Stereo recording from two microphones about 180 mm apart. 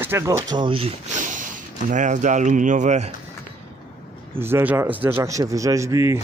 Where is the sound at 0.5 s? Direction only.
30° right (ahead or behind).